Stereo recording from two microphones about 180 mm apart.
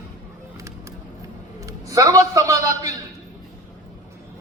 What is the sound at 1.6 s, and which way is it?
A man's voice, 20° right (ahead or behind).